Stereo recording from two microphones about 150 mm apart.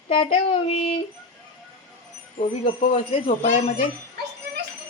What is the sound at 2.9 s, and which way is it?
Speech, 45° left (ahead or behind).